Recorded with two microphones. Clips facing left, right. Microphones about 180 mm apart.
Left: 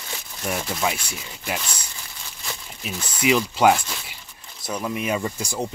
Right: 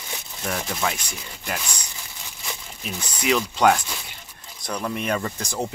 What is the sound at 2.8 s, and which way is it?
Speech, 5° left (ahead or behind).